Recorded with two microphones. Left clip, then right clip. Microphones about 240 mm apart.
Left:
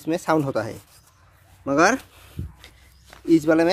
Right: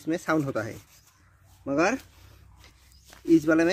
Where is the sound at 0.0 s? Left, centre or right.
Centre.